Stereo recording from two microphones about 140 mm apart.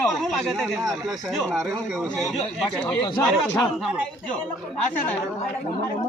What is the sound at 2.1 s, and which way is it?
Speech, centre (ahead or behind).